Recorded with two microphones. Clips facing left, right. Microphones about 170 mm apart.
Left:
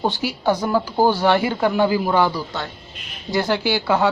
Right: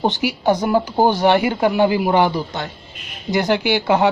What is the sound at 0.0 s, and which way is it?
Speech, 15° right (ahead or behind).